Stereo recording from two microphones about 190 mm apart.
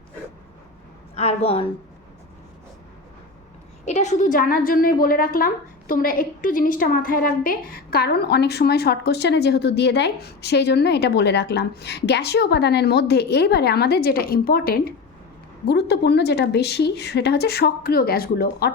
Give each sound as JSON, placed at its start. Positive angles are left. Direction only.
{"t": 1.1, "sound": "a woman's voice", "side_deg": 35}
{"t": 3.8, "sound": "a woman's voice", "side_deg": 40}